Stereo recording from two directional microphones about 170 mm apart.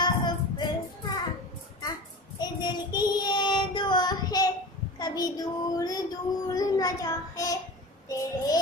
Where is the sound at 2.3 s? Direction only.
25° left (ahead or behind).